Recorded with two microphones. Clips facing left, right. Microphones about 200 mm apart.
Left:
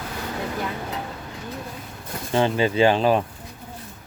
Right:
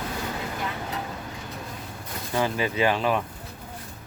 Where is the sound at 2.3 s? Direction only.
25° left (ahead or behind).